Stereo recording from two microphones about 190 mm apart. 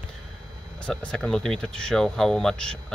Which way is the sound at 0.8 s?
5° left (ahead or behind).